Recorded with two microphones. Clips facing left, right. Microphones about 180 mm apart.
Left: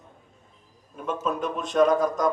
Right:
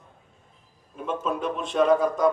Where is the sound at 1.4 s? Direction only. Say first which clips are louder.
Left 3 dB; 40° left (ahead or behind).